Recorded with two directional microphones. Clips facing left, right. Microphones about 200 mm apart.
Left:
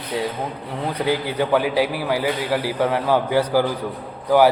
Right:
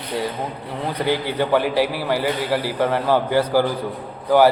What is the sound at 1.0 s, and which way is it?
A man's voice, 5° left (ahead or behind).